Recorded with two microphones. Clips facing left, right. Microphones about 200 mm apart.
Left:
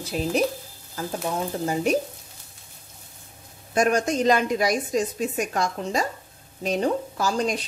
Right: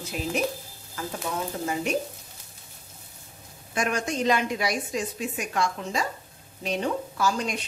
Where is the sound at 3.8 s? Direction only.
40° left (ahead or behind).